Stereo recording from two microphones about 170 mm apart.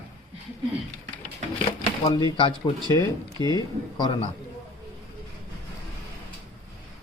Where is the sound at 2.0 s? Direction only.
25° left (ahead or behind).